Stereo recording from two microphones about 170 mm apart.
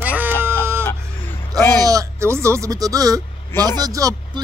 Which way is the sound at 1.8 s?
20° right (ahead or behind).